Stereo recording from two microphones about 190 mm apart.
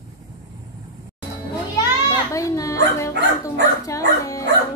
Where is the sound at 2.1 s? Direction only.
15° left (ahead or behind).